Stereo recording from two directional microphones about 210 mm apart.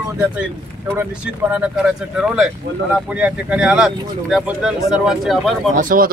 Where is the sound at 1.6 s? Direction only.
5° right (ahead or behind).